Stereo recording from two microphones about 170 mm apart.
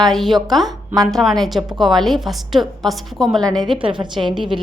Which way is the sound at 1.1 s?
Centre (ahead or behind).